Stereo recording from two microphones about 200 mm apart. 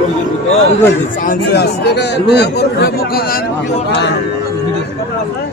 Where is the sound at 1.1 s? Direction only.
45° left (ahead or behind).